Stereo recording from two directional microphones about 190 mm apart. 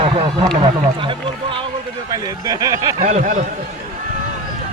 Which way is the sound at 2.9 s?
40° right (ahead or behind).